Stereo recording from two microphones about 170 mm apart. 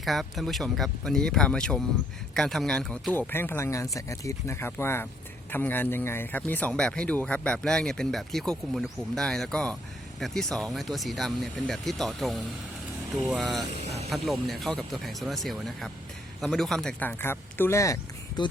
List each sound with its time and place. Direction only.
0.0 s speech: centre (ahead or behind)
13.8 s a sound: 40° right (ahead or behind)
14.1 s speech: centre (ahead or behind); by 18.4 s 20° left (ahead or behind)